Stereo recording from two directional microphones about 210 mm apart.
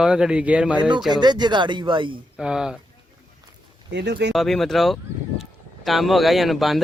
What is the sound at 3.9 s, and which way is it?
Speech, 55° right (ahead or behind).